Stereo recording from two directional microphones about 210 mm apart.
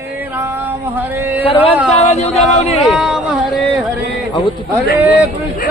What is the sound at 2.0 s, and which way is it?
Speech, 30° left (ahead or behind).